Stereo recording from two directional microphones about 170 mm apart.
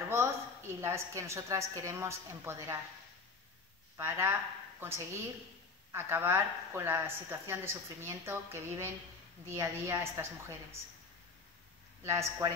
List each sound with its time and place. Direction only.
0.1 s speech: 15° right (ahead or behind)
3.9 s a woman's voice: 15° right (ahead or behind)
12.0 s speech: 15° right (ahead or behind)